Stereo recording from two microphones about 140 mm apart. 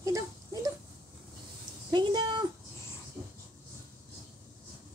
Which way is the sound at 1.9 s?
30° right (ahead or behind).